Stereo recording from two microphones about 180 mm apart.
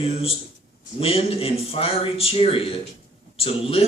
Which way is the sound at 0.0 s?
30° left (ahead or behind).